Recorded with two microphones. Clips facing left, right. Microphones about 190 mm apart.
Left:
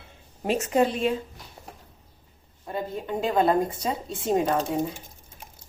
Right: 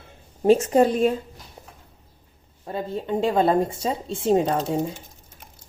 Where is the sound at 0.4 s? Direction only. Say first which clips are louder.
Right 6 dB; 30° right (ahead or behind).